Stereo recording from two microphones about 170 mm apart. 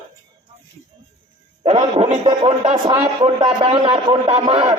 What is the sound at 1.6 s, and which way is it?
Music, 35° right (ahead or behind).